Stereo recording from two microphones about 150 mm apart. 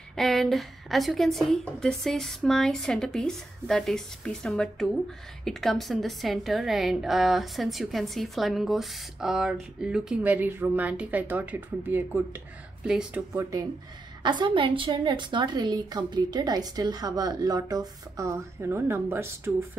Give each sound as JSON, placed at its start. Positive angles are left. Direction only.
{"t": 0.1, "sound": "a woman's voice", "side_deg": 0}
{"t": 13.4, "sound": "a woman's voice", "side_deg": -20}